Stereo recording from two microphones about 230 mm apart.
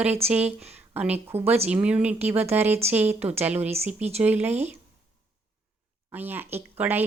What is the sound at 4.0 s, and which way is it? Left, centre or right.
Speech, right.